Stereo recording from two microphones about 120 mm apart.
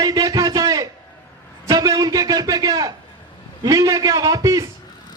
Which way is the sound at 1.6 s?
30° right (ahead or behind).